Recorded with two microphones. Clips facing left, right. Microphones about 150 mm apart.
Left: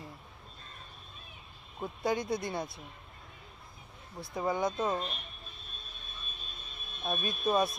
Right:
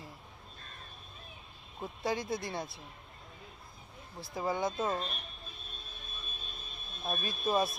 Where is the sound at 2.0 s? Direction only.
25° right (ahead or behind).